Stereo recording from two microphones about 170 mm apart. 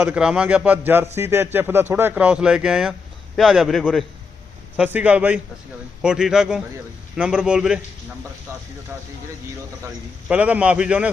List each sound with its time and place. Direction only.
0.0 s a man's voice: 5° right (ahead or behind)
4.8 s a man's voice: 10° right (ahead or behind)
8.9 s speech: 20° right (ahead or behind)
10.2 s a man's voice: 10° right (ahead or behind)